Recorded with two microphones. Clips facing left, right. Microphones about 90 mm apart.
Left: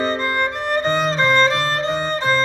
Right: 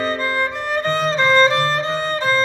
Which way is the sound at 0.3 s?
10° left (ahead or behind).